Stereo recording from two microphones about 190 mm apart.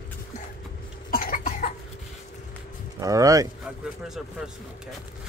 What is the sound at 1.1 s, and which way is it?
Cough, 45° left (ahead or behind).